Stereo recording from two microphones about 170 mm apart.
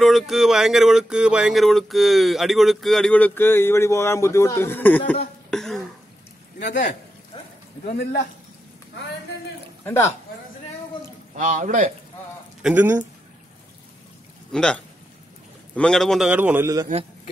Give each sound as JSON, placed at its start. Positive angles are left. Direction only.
{"t": 0.0, "sound": "a sound", "side_deg": 0}
{"t": 7.8, "sound": "speech", "side_deg": 55}
{"t": 11.3, "sound": "a man's voice", "side_deg": -50}
{"t": 12.6, "sound": "speech", "side_deg": -10}
{"t": 14.5, "sound": "speech", "side_deg": 5}
{"t": 15.7, "sound": "a sound", "side_deg": 5}